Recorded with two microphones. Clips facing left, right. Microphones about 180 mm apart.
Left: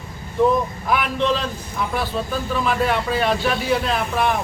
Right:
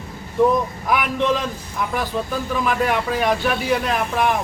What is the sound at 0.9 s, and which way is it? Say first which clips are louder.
Speech: right 1 dB; 15° right (ahead or behind).